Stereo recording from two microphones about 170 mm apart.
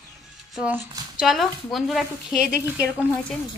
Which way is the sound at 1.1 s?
Centre (ahead or behind).